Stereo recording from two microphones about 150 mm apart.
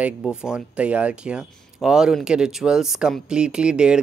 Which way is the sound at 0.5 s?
10° right (ahead or behind).